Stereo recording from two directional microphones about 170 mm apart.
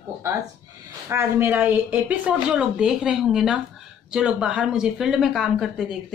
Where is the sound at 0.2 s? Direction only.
15° right (ahead or behind).